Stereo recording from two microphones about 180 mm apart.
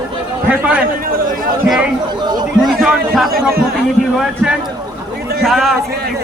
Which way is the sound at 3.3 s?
55° right (ahead or behind).